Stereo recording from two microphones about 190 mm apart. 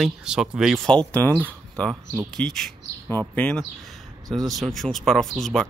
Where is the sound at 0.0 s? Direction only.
5° right (ahead or behind).